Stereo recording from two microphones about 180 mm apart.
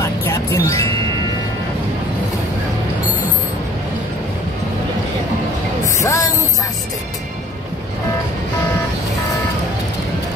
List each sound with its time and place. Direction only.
0.0 s music: 15° left (ahead or behind)
6.0 s music: 20° left (ahead or behind)